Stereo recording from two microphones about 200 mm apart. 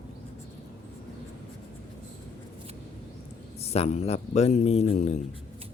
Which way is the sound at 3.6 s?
30° left (ahead or behind).